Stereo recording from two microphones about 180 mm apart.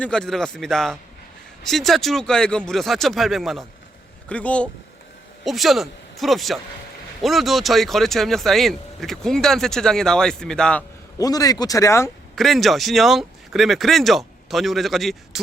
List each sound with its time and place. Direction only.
0.0 s speech: 5° left (ahead or behind)
11.2 s a man's voice: 20° left (ahead or behind)
12.4 s speech: centre (ahead or behind)